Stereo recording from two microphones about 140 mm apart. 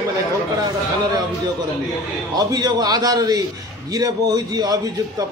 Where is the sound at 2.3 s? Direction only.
30° right (ahead or behind).